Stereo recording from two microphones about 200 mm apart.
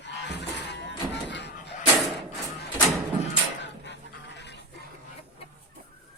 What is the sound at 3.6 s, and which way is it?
Fowl, 60° left (ahead or behind).